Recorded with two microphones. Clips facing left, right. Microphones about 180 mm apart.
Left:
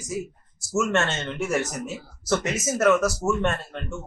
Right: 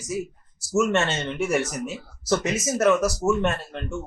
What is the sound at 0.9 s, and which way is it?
Speech, centre (ahead or behind).